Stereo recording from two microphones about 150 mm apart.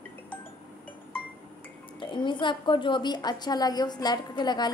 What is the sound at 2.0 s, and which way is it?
A woman's voice, 30° left (ahead or behind).